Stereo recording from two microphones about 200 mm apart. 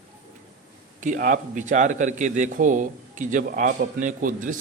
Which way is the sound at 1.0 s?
40° right (ahead or behind).